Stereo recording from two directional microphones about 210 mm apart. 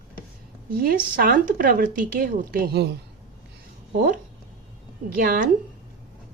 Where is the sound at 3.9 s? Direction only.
40° right (ahead or behind).